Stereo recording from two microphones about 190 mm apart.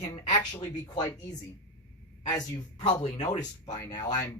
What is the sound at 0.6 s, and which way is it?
Speech, 15° left (ahead or behind).